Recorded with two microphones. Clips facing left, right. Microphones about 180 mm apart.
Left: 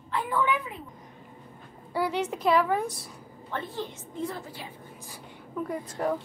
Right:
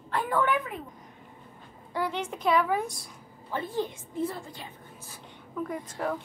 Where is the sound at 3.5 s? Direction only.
10° right (ahead or behind).